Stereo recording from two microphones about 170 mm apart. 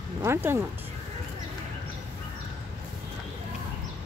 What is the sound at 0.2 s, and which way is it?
Speech, 15° right (ahead or behind).